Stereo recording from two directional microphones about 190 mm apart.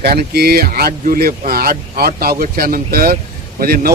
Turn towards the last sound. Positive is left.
turn(degrees=-50)  # may be behind; listen again after turning